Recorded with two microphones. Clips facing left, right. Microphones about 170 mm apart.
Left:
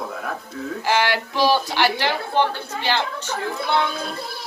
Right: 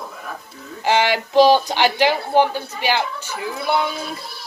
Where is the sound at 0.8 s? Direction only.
20° right (ahead or behind).